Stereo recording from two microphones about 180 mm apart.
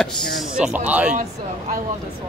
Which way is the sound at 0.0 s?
Centre (ahead or behind).